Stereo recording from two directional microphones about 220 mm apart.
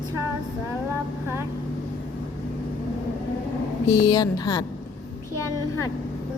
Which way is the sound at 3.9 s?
20° left (ahead or behind).